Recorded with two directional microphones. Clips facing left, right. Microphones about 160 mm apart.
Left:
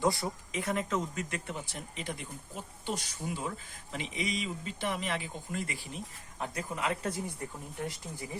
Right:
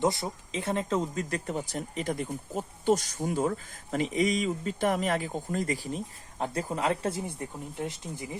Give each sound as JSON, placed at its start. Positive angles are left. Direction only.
{"t": 0.0, "sound": "speech", "side_deg": -20}